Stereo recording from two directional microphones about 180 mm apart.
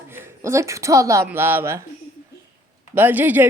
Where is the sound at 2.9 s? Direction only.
10° right (ahead or behind).